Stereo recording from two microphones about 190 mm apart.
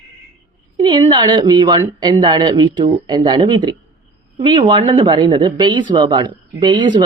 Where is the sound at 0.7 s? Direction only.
25° right (ahead or behind).